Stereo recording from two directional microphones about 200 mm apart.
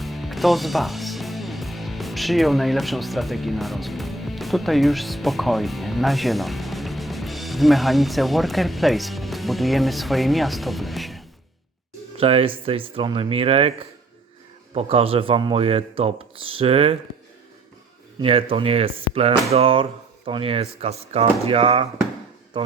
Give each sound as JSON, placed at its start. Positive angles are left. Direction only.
{"t": 0.0, "sound": "speech", "side_deg": 0}
{"t": 12.1, "sound": "speech", "side_deg": -30}
{"t": 18.2, "sound": "speech", "side_deg": -25}